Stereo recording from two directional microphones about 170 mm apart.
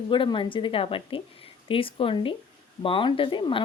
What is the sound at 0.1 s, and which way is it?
A woman's voice, 30° left (ahead or behind).